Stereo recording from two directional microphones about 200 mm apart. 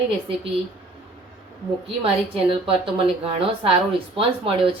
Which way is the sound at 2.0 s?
25° right (ahead or behind).